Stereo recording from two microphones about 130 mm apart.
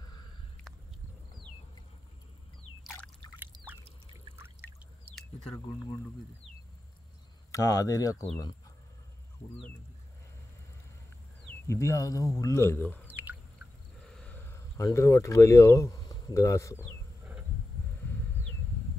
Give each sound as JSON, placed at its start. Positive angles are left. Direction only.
{"t": 4.4, "sound": "pour", "side_deg": -20}
{"t": 7.5, "sound": "speech", "side_deg": 25}
{"t": 11.6, "sound": "speech", "side_deg": 20}
{"t": 13.0, "sound": "bird", "side_deg": -15}
{"t": 14.0, "sound": "speech", "side_deg": 5}
{"t": 18.0, "sound": "a sound", "side_deg": 15}